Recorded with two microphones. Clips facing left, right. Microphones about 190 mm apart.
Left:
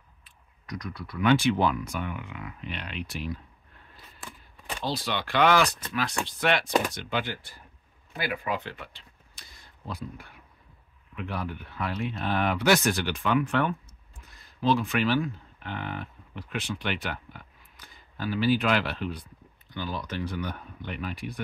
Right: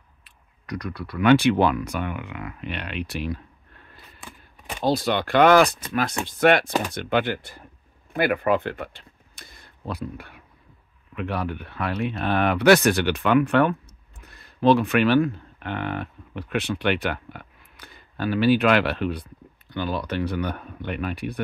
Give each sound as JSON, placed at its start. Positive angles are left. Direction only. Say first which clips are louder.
{"t": 0.2, "sound": "speech", "louder": "right 1 dB", "side_deg": -65}
{"t": 3.9, "sound": "a sound", "louder": "right 1 dB", "side_deg": 0}
{"t": 4.8, "sound": "speech", "louder": "right 9 dB", "side_deg": -50}